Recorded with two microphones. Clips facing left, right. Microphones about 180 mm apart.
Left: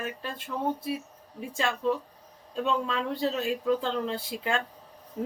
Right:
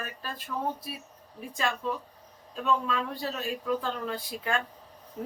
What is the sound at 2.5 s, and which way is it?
Speech, 25° left (ahead or behind).